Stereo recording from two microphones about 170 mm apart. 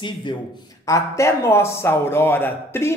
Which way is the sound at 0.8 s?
15° left (ahead or behind).